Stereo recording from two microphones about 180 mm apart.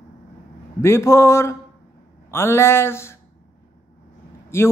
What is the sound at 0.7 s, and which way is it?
Speech, 15° left (ahead or behind).